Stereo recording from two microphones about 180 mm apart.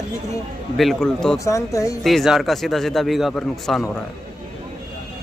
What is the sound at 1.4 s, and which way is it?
Speech, 15° left (ahead or behind).